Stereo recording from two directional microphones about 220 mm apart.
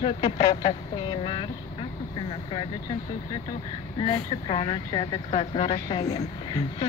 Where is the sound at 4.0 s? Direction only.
25° left (ahead or behind).